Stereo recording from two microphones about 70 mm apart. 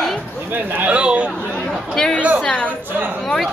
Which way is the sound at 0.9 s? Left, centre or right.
Centre.